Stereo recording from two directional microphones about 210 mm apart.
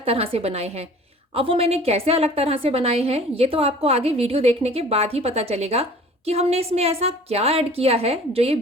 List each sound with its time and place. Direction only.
0.0 s a woman's voice: 30° right (ahead or behind)